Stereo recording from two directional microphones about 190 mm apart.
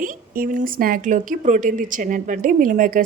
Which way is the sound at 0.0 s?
45° right (ahead or behind).